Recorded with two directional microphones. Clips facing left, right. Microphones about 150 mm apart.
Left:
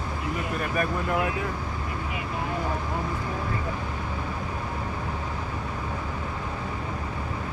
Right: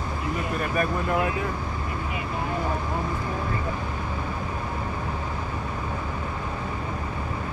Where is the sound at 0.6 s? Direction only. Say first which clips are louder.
Right 2 dB; 35° right (ahead or behind).